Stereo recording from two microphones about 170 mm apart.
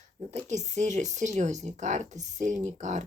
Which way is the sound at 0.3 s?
40° right (ahead or behind).